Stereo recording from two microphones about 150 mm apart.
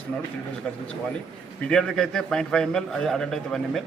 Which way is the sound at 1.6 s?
5° left (ahead or behind).